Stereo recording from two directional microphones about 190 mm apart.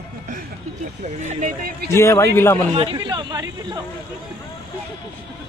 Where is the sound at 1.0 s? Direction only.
40° right (ahead or behind).